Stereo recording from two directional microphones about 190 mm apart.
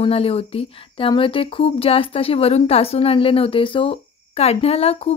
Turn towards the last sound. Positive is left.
turn(degrees=30)  # may be behind; listen again after turning